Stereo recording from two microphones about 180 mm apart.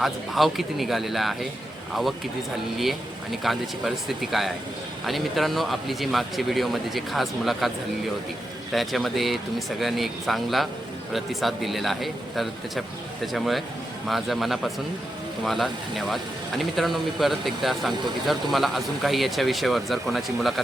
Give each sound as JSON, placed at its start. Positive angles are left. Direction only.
{"t": 0.0, "sound": "speech", "side_deg": 0}
{"t": 3.4, "sound": "speech", "side_deg": 0}
{"t": 8.7, "sound": "speech", "side_deg": 0}